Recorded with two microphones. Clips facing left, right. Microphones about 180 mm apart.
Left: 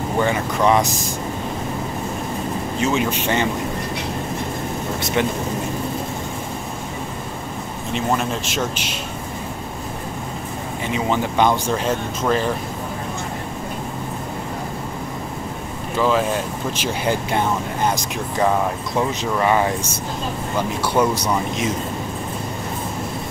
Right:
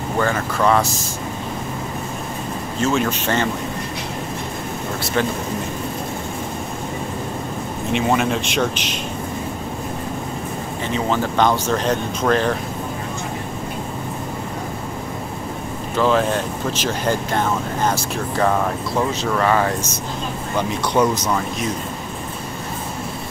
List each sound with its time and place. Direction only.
0.2 s speech: 15° left (ahead or behind)
2.8 s speech: 15° left (ahead or behind)
7.9 s speech: centre (ahead or behind)
10.9 s speech: 15° left (ahead or behind)
16.0 s speech: 10° left (ahead or behind)